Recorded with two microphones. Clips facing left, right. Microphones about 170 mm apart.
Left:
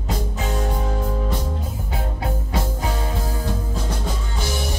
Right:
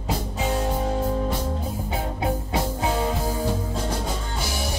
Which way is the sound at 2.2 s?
20° right (ahead or behind).